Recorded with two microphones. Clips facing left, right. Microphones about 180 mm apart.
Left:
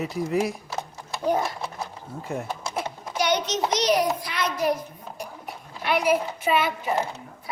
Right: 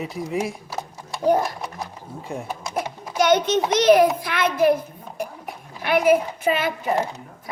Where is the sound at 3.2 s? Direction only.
50° right (ahead or behind).